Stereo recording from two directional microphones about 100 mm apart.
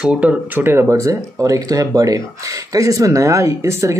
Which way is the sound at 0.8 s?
30° right (ahead or behind).